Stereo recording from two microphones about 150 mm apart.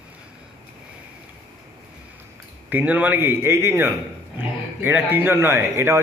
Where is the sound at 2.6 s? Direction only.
10° right (ahead or behind).